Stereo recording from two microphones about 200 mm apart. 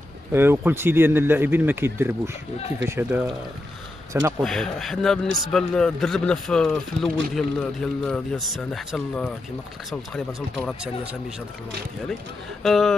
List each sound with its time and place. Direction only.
0.3 s speech: 10° right (ahead or behind)
4.4 s a man's voice: centre (ahead or behind)
12.6 s a man's voice: centre (ahead or behind)